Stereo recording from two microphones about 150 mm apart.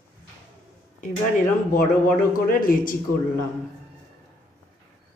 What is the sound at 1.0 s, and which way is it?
Speech, 65° left (ahead or behind).